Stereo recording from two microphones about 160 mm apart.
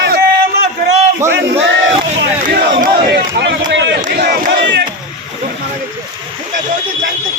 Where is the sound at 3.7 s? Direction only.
90° right.